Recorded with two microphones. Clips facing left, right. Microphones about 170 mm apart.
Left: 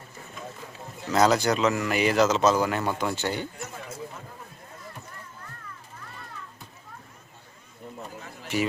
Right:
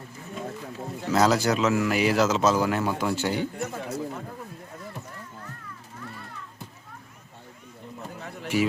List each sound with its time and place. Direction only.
1.1 s speech: 5° right (ahead or behind)
3.6 s a sound: 65° right (ahead or behind)
8.5 s speech: 10° right (ahead or behind)